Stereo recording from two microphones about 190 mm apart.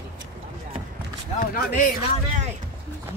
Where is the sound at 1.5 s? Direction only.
45° left (ahead or behind).